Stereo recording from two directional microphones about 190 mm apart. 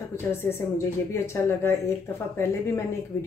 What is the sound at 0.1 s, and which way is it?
Speech, 15° left (ahead or behind).